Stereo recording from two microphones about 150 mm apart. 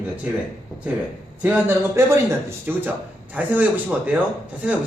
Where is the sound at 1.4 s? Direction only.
15° right (ahead or behind).